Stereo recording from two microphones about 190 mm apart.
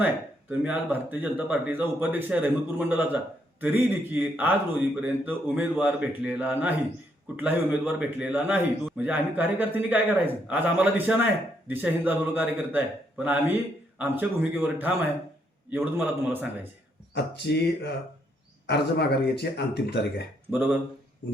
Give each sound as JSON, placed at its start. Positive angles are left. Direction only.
{"t": 0.0, "sound": "a man's voice", "side_deg": -10}
{"t": 17.2, "sound": "speech", "side_deg": 60}
{"t": 20.5, "sound": "a man's voice", "side_deg": -10}